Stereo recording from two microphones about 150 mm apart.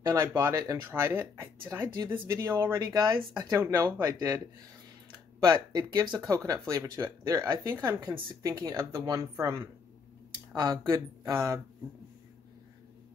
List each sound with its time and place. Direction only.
0.1 s speech: 20° right (ahead or behind)
5.4 s speech: 30° right (ahead or behind)